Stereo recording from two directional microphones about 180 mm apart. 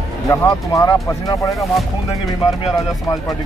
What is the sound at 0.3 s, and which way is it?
Speech, 20° left (ahead or behind).